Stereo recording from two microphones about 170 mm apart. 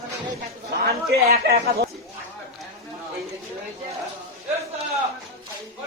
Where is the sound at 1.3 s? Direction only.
65° right (ahead or behind).